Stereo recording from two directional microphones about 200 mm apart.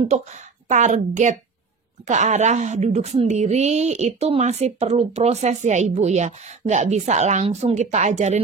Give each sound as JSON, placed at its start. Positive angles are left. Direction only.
{"t": 0.7, "sound": "a woman's voice", "side_deg": -35}